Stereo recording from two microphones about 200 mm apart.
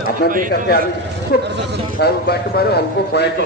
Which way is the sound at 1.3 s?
50° left (ahead or behind).